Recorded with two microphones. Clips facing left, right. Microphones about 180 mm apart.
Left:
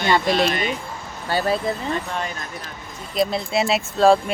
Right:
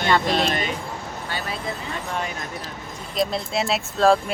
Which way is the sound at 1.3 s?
40° left (ahead or behind).